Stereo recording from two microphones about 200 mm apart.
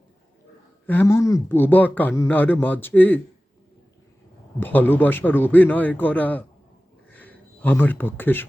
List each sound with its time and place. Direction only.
0.9 s speech: 10° left (ahead or behind)
4.6 s speech: 10° left (ahead or behind)
7.1 s a sound: 10° left (ahead or behind)